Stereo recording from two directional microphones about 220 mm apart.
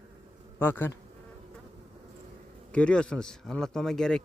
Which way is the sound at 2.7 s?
5° left (ahead or behind).